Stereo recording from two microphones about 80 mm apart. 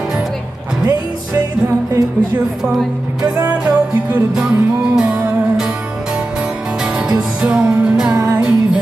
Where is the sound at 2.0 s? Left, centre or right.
Right.